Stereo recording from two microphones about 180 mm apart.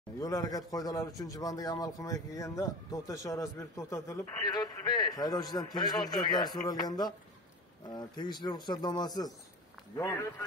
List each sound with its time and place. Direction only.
0.2 s a man's voice: 20° left (ahead or behind)